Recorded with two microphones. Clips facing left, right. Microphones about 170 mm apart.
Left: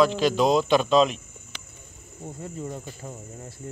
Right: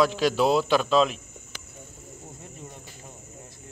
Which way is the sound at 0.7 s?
Centre (ahead or behind).